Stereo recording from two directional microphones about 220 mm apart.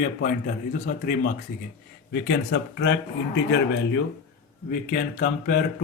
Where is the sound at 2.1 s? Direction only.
55° left (ahead or behind).